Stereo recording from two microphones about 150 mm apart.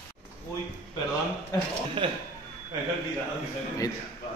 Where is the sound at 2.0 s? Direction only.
35° right (ahead or behind).